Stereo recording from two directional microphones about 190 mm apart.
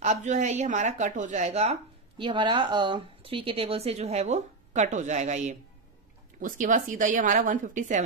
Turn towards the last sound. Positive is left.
turn(degrees=-40)  # may be behind; listen again after turning